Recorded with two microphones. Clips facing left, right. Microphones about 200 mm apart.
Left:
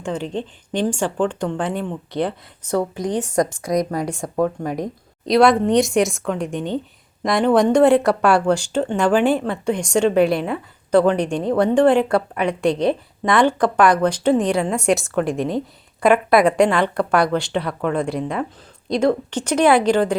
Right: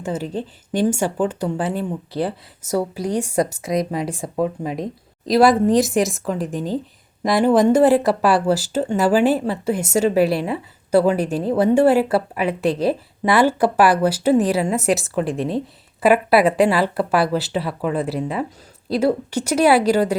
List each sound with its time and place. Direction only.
0.0 s a woman's voice: 5° right (ahead or behind)
3.7 s a woman's voice: 25° right (ahead or behind)
4.0 s a woman's voice: 5° right (ahead or behind)